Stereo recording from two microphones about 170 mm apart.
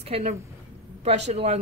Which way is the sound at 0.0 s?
40° right (ahead or behind).